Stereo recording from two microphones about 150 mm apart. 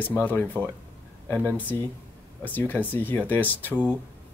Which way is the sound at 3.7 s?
10° right (ahead or behind).